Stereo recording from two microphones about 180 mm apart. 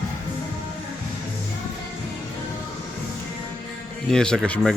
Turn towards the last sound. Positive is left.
turn(degrees=5)  # may be behind; listen again after turning